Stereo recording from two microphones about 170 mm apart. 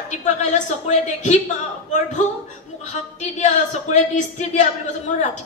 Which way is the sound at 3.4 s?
45° left (ahead or behind).